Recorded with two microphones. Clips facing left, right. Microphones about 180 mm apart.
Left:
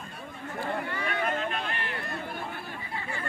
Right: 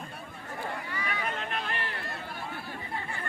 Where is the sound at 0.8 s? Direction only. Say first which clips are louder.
Left 4 dB; 55° left (ahead or behind).